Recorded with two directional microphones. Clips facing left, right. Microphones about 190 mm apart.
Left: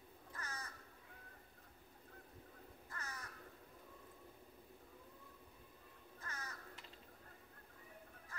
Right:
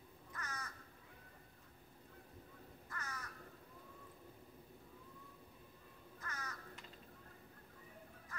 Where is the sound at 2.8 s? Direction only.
30° left (ahead or behind).